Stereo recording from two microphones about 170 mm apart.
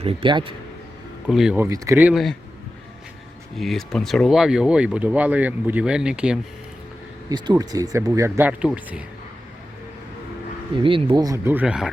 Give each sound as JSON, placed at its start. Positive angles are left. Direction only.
{"t": 0.0, "sound": "speech", "side_deg": -35}
{"t": 1.3, "sound": "speech", "side_deg": -5}
{"t": 1.5, "sound": "speech", "side_deg": -20}
{"t": 3.6, "sound": "speech", "side_deg": 0}
{"t": 7.3, "sound": "speech", "side_deg": -25}
{"t": 10.8, "sound": "speech", "side_deg": -30}